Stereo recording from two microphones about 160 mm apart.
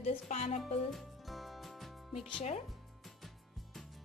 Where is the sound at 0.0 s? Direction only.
40° left (ahead or behind).